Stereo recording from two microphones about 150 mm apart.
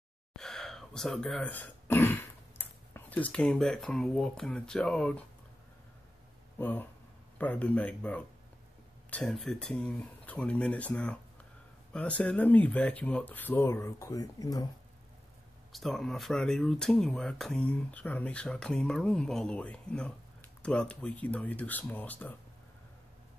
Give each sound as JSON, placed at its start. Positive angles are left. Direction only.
{"t": 0.4, "sound": "speech", "side_deg": 5}
{"t": 6.6, "sound": "speech", "side_deg": 10}
{"t": 15.7, "sound": "speech", "side_deg": 0}